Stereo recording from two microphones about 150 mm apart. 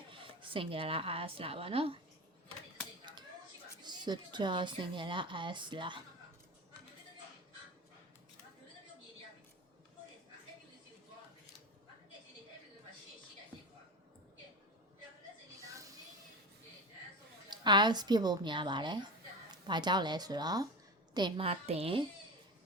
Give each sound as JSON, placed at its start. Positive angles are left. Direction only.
{"t": 0.1, "sound": "speech", "side_deg": -35}
{"t": 3.8, "sound": "a woman's voice", "side_deg": -30}
{"t": 15.6, "sound": "music", "side_deg": -20}
{"t": 17.5, "sound": "a woman's voice", "side_deg": -30}